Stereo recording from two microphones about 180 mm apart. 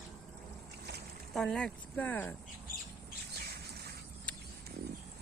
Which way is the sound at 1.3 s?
5° left (ahead or behind).